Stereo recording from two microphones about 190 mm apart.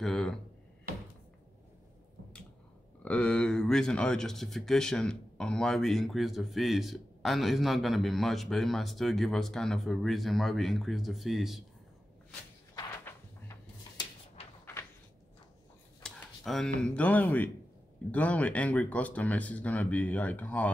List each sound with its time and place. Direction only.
0.0 s speech: centre (ahead or behind)
3.0 s speech: 5° left (ahead or behind)
12.7 s a sound: 15° left (ahead or behind)
16.0 s speech: 5° left (ahead or behind)